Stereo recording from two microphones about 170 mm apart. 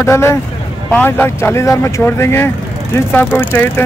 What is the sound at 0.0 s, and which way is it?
Speech, 15° left (ahead or behind).